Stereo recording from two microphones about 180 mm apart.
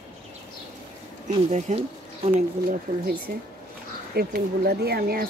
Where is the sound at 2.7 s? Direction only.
55° right (ahead or behind).